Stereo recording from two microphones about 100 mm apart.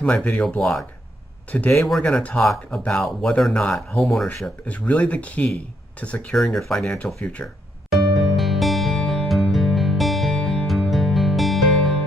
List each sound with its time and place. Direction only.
0.0 s speech: 10° left (ahead or behind)
1.5 s speech: 15° left (ahead or behind)
1.8 s speech: 5° left (ahead or behind)
2.8 s speech: 15° left (ahead or behind)
4.6 s speech: 15° left (ahead or behind)
7.4 s music: centre (ahead or behind)